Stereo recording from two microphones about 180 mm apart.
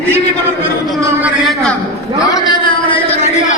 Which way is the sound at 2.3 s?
20° left (ahead or behind).